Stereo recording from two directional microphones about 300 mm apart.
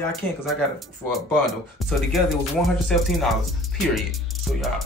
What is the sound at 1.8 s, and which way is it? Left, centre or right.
Speech, centre.